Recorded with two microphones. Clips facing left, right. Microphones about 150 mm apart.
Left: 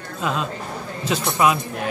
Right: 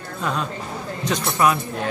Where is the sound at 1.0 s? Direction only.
10° left (ahead or behind).